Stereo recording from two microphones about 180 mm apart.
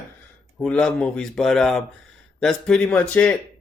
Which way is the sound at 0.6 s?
5° left (ahead or behind).